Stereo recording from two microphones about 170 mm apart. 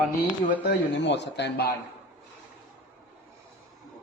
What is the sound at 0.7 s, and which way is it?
Speech, 90° left.